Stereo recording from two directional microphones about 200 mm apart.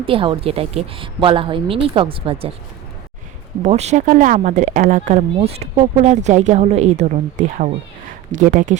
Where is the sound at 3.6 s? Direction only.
35° right (ahead or behind).